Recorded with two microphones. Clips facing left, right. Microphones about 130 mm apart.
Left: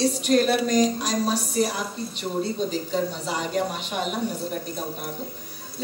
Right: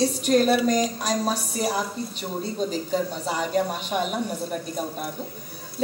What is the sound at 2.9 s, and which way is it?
A woman's voice, 45° right (ahead or behind).